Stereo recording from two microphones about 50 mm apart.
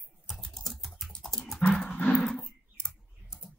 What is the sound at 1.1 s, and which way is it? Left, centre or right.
Dog, centre.